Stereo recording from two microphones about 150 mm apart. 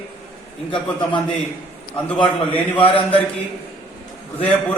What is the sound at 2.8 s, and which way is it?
Speech, 35° left (ahead or behind).